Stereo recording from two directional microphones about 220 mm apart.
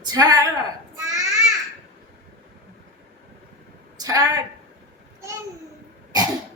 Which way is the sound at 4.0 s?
15° right (ahead or behind).